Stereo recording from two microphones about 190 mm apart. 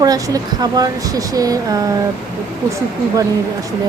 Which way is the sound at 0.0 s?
20° right (ahead or behind).